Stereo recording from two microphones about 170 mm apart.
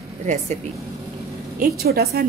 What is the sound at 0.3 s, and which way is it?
Speech, 45° right (ahead or behind).